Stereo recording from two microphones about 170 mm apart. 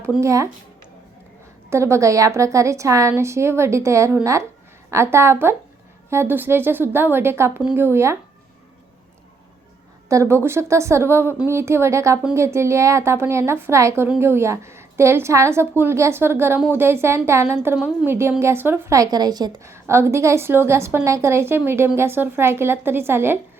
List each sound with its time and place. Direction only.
0.0 s a woman's voice: 15° right (ahead or behind)
1.7 s a woman's voice: 15° right (ahead or behind)
10.1 s a woman's voice: 15° right (ahead or behind)